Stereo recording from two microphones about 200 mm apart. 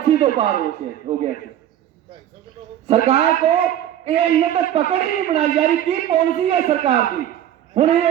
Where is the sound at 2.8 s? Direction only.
30° right (ahead or behind).